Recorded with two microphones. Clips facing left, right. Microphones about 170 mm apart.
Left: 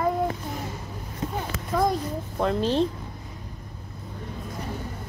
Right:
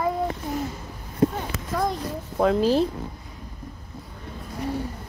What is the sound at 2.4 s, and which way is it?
Speech, 5° right (ahead or behind).